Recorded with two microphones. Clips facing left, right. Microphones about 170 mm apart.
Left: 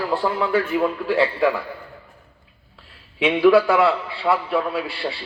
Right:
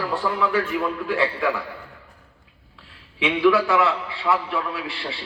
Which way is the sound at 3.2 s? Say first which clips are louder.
Left 4 dB; 35° left (ahead or behind).